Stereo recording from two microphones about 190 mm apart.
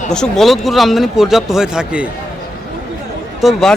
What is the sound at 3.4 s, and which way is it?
Speech, centre (ahead or behind).